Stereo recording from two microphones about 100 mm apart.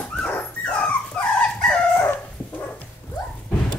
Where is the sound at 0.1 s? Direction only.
10° left (ahead or behind).